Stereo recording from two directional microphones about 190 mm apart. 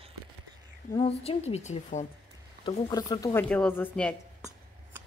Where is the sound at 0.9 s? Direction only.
30° left (ahead or behind).